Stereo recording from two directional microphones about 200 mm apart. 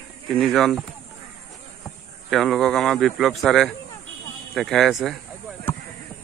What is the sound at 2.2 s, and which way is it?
Speech, centre (ahead or behind).